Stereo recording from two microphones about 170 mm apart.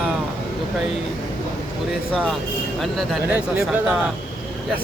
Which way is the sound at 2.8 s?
Centre (ahead or behind).